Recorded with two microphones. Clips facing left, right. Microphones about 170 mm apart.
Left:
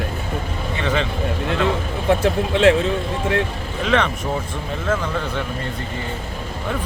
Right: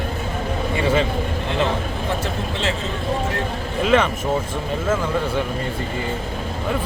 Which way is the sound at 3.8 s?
5° right (ahead or behind).